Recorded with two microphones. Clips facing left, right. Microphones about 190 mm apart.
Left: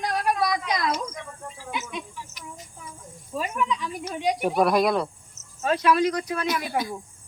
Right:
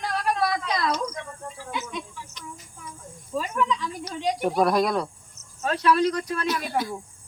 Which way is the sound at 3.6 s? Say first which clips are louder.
Right 2 dB; 15° left (ahead or behind).